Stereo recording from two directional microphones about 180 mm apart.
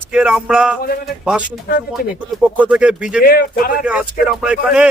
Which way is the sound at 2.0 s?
60° left (ahead or behind).